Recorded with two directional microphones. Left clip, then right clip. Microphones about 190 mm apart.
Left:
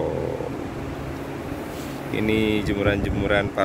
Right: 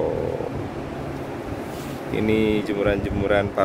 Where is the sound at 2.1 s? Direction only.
5° right (ahead or behind).